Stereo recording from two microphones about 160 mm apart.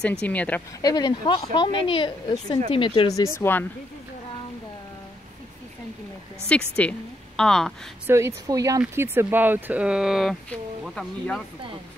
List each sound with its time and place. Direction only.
0.0 s a woman's voice: 5° left (ahead or behind)
0.8 s speech: 25° left (ahead or behind)
3.3 s a woman's voice: 15° left (ahead or behind)
6.5 s a woman's voice: 10° left (ahead or behind)
8.1 s speech: 15° right (ahead or behind); by 11.4 s 5° left (ahead or behind)